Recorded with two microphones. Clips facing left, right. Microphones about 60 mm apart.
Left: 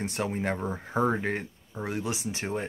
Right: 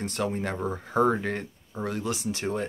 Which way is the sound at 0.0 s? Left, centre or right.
Centre.